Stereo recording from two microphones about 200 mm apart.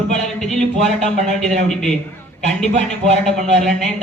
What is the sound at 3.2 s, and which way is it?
Speech, centre (ahead or behind).